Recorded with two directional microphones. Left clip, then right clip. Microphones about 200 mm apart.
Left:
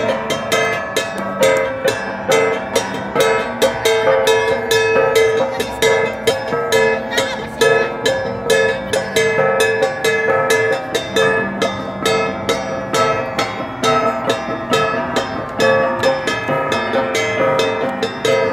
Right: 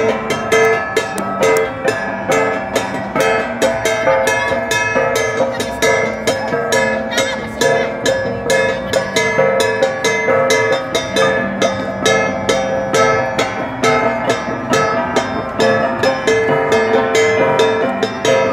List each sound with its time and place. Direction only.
0.0 s music: 35° left (ahead or behind); by 18.5 s 20° left (ahead or behind)